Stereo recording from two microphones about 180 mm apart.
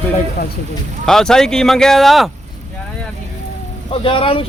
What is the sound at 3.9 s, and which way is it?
Speech, 30° left (ahead or behind).